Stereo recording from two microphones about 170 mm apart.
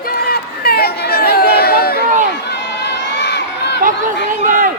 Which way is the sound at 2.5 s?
80° left.